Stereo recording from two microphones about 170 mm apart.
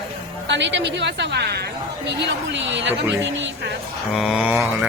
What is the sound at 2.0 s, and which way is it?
Speech, 90° right.